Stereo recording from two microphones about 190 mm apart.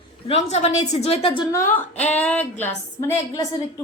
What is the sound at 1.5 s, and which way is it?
Music, 15° left (ahead or behind).